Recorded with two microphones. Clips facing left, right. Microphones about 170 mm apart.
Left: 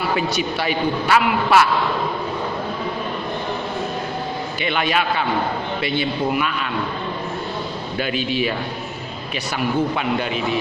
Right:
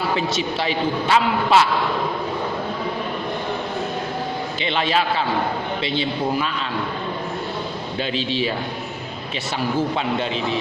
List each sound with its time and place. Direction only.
0.2 s a man's voice: 25° right (ahead or behind)
4.6 s a man's voice: 30° right (ahead or behind)
7.9 s a man's voice: 25° right (ahead or behind)
9.6 s a man's voice: 30° right (ahead or behind)